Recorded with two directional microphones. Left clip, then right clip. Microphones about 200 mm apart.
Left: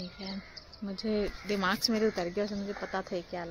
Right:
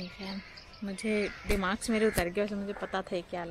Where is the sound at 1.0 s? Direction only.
5° right (ahead or behind).